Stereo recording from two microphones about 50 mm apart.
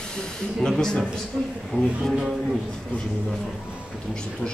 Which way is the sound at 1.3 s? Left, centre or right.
Centre.